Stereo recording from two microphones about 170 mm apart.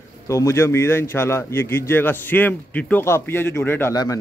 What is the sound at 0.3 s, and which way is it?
A man's voice, 15° left (ahead or behind).